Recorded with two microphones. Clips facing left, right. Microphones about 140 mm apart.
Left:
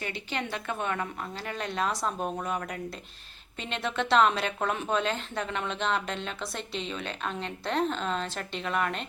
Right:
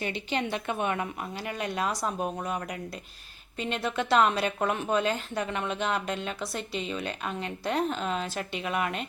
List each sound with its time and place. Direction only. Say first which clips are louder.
0.0 s a woman's voice: right 4 dB; 20° right (ahead or behind)